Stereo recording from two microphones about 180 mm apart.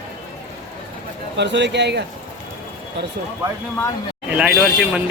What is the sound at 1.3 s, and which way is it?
Speech, 75° right (ahead or behind).